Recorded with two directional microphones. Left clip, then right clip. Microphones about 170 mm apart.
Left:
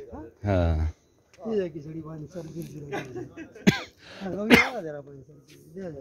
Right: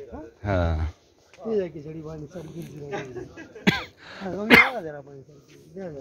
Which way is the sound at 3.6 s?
55° left (ahead or behind).